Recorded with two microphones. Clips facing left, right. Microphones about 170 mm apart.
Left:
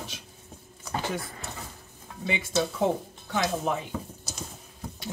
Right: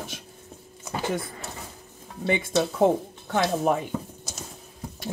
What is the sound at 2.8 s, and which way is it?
Speech, 55° right (ahead or behind).